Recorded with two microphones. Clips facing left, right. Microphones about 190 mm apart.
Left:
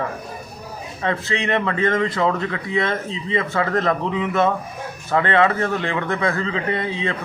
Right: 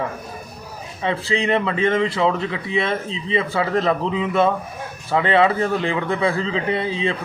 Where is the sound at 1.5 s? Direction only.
10° right (ahead or behind).